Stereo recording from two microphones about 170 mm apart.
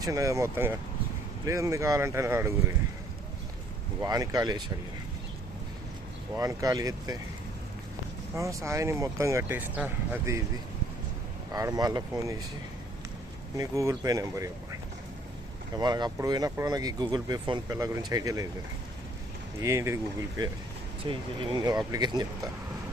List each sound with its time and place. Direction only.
0.0 s speech: 20° right (ahead or behind)
4.0 s speech: 20° right (ahead or behind)
6.3 s speech: 20° right (ahead or behind)
8.4 s speech: 20° right (ahead or behind)
11.5 s speech: 20° right (ahead or behind)
13.6 s speech: 20° right (ahead or behind)
19.6 s speech: 15° right (ahead or behind)
21.0 s speech: 30° right (ahead or behind)